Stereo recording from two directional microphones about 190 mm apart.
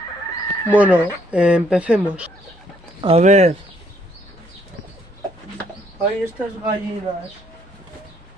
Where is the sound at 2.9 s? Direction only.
30° right (ahead or behind).